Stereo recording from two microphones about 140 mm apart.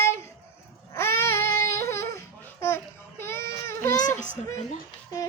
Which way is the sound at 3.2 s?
15° left (ahead or behind).